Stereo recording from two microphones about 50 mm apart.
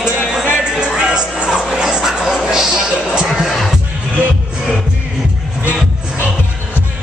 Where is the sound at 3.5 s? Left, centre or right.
Centre.